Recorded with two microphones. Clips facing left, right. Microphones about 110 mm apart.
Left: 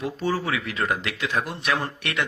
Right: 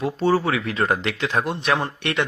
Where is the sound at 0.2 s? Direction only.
30° right (ahead or behind).